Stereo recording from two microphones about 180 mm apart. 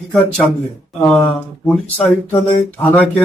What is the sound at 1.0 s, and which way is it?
Speech, 5° left (ahead or behind).